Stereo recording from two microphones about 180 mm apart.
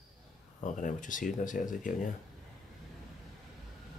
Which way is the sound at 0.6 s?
45° left (ahead or behind).